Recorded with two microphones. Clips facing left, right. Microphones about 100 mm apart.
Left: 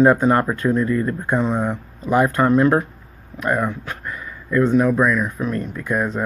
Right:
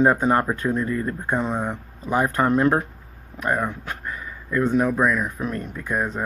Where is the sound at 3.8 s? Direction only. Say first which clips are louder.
Left 1 dB; 25° right (ahead or behind).